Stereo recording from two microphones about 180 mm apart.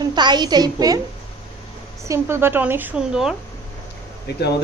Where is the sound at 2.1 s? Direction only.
15° right (ahead or behind).